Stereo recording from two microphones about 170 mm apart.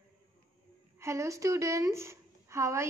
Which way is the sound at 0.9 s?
15° right (ahead or behind).